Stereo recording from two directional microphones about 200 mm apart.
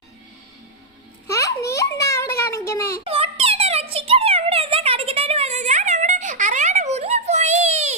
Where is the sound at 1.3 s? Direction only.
15° left (ahead or behind).